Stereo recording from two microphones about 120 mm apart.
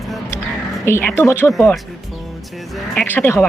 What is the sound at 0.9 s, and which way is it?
Speech, 20° left (ahead or behind).